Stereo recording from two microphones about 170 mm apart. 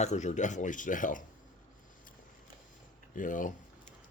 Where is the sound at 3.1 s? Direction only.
50° left (ahead or behind).